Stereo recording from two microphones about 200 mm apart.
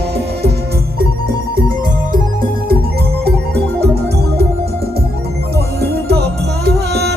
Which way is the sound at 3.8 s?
55° right (ahead or behind).